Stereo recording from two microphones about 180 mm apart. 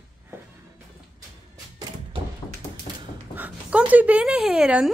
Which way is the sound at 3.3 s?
10° right (ahead or behind).